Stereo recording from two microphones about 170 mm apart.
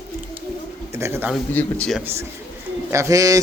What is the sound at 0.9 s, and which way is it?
Speech, 15° right (ahead or behind).